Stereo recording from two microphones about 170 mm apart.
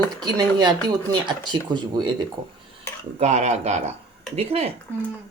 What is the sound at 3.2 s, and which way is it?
Speech, 40° right (ahead or behind).